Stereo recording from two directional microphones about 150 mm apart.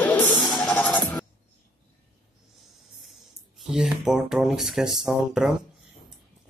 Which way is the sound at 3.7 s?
5° right (ahead or behind).